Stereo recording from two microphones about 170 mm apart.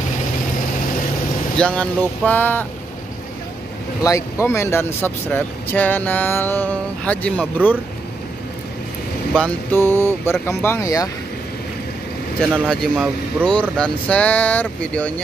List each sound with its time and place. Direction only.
1.6 s speech: 5° left (ahead or behind)
4.0 s speech: 15° left (ahead or behind)
9.3 s speech: 10° left (ahead or behind)
12.4 s speech: 5° left (ahead or behind)